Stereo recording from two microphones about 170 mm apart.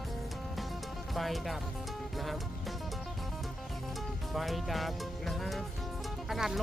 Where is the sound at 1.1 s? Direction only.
Centre (ahead or behind).